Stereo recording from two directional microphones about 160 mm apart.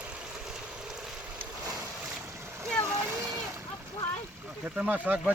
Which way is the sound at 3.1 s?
20° right (ahead or behind).